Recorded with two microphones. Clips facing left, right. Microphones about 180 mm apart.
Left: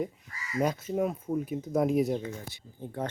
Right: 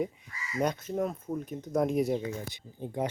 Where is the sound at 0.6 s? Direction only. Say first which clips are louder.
Left 1 dB; 5° left (ahead or behind).